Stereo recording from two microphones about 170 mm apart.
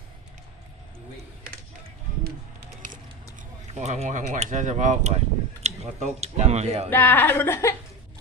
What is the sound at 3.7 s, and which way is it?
Speech, 40° right (ahead or behind).